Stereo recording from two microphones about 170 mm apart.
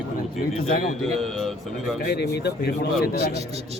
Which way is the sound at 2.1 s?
75° left (ahead or behind).